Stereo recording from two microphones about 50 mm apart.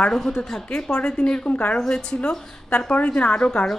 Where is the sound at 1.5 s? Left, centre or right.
Left.